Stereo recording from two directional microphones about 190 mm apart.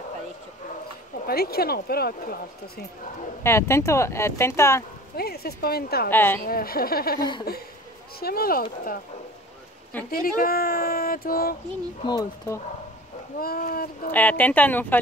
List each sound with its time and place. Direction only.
1.2 s speech: 55° left (ahead or behind)
3.4 s speech: 15° left (ahead or behind)
5.1 s speech: 55° left (ahead or behind)
6.0 s speech: 10° left (ahead or behind)
6.4 s speech: 50° left (ahead or behind)
10.1 s speech: 50° left (ahead or behind)
12.1 s speech: 20° left (ahead or behind)
13.4 s speech: 50° left (ahead or behind)
14.1 s speech: 10° left (ahead or behind)